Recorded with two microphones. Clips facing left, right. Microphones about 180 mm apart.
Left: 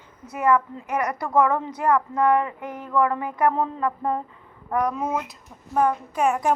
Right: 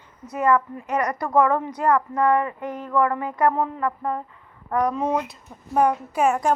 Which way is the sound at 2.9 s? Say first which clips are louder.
Even; 20° left (ahead or behind).